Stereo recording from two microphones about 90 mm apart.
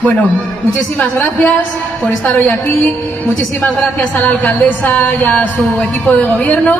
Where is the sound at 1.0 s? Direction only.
Centre (ahead or behind).